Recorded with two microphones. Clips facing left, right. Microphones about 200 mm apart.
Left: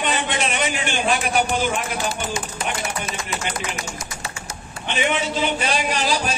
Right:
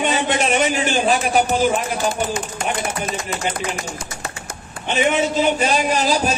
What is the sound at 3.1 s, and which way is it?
Speech, 55° right (ahead or behind).